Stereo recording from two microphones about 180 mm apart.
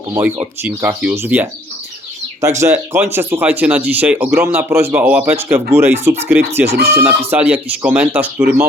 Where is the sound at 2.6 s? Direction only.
15° right (ahead or behind).